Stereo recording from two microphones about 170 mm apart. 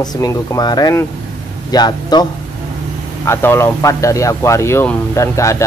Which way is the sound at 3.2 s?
15° left (ahead or behind).